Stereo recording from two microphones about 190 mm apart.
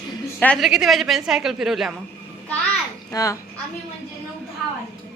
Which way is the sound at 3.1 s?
20° left (ahead or behind).